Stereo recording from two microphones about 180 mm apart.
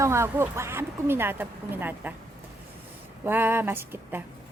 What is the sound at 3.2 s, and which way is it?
A woman's voice, 10° right (ahead or behind).